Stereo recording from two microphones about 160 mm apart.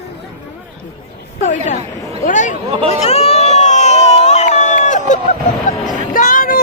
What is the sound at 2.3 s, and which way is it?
Speech, 50° left (ahead or behind).